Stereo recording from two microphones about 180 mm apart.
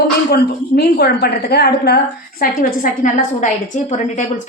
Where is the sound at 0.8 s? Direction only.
65° left (ahead or behind).